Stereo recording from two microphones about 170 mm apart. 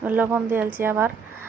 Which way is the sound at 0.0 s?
10° right (ahead or behind).